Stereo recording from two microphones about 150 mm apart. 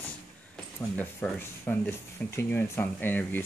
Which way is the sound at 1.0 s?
10° left (ahead or behind).